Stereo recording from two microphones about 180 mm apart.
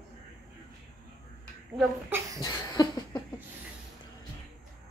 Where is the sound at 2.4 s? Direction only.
20° left (ahead or behind).